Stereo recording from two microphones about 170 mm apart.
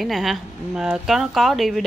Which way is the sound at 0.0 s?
Centre (ahead or behind).